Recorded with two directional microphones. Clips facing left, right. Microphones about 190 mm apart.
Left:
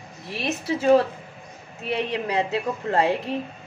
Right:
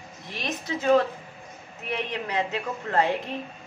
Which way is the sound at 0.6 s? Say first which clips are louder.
Left 3 dB; 30° left (ahead or behind).